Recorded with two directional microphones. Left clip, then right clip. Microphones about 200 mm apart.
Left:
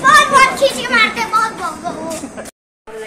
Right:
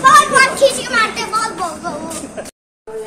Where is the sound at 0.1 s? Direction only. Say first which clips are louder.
Left 1 dB; 20° left (ahead or behind).